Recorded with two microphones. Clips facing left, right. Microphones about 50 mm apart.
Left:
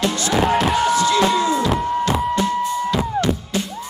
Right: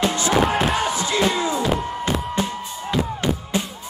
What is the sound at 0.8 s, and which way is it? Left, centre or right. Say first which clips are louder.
Music: left 5 dB; right.